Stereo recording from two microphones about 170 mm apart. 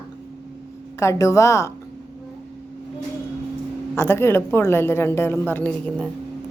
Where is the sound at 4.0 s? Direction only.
15° left (ahead or behind).